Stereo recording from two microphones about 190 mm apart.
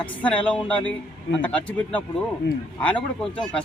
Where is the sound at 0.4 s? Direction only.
5° left (ahead or behind).